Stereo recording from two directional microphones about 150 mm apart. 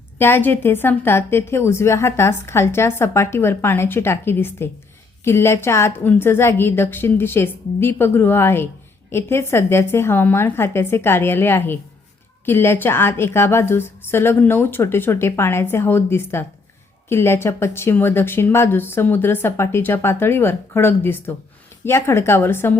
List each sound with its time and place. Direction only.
0.2 s a woman's voice: 15° left (ahead or behind)